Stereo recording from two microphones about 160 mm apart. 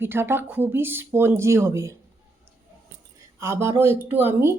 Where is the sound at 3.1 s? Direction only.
15° right (ahead or behind).